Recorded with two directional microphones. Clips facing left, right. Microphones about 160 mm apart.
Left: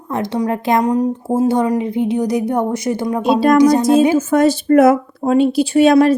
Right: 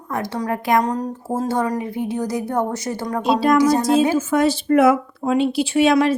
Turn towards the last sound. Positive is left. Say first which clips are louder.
# left 5 dB
turn(degrees=40)  # may be behind; listen again after turning